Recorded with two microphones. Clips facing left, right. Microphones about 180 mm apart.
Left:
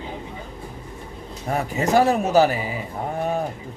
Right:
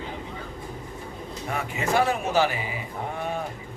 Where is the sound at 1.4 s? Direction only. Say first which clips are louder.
Left 6 dB; 40° left (ahead or behind).